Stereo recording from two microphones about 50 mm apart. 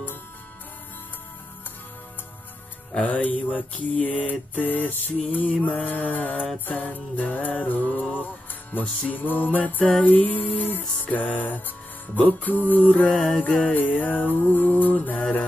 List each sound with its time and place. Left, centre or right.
2.9 s mantra: left